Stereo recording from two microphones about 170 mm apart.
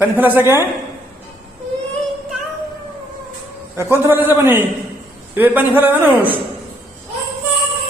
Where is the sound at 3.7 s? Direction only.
15° right (ahead or behind).